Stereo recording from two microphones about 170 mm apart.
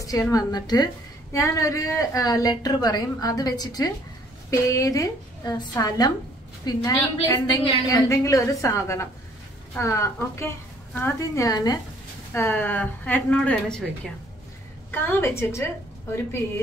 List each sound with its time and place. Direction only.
0.0 s a woman's voice: 20° left (ahead or behind)